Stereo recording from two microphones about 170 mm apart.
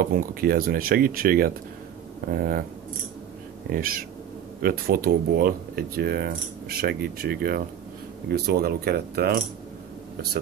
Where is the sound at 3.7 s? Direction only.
55° right (ahead or behind).